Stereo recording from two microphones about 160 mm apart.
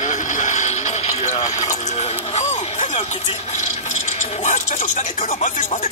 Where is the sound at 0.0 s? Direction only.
50° left (ahead or behind).